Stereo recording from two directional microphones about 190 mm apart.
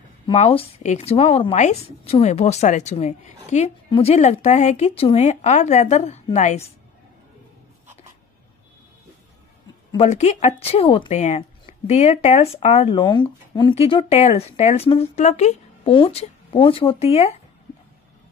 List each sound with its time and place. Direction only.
0.3 s a woman's voice: 30° left (ahead or behind)
9.9 s a woman's voice: 35° left (ahead or behind)
13.0 s a woman's voice: 25° left (ahead or behind)